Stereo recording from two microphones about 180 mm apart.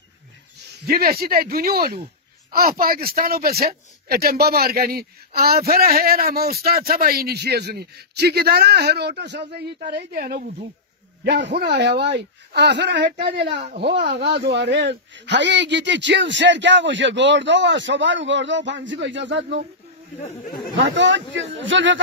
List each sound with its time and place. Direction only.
0.8 s speech: 55° right (ahead or behind)
11.2 s a man's voice: 70° right (ahead or behind); by 19.6 s 90° right
20.7 s a man's voice: 90° right